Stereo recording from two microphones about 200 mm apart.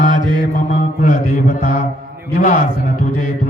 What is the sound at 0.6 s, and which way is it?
Music, 40° left (ahead or behind).